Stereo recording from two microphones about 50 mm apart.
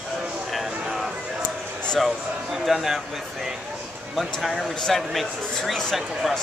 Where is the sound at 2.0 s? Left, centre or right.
Centre.